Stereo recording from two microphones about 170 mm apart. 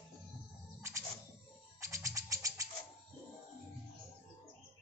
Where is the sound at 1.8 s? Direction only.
20° right (ahead or behind).